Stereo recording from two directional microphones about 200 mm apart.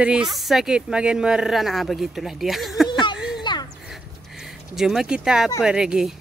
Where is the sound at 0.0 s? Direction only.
5° right (ahead or behind).